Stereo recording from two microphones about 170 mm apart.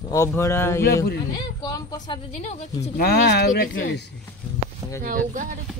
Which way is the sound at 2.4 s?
40° left (ahead or behind).